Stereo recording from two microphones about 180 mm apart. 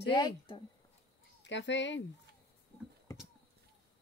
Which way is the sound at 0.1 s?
30° left (ahead or behind).